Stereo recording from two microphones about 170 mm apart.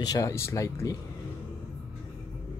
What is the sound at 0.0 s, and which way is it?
Speech, 20° left (ahead or behind).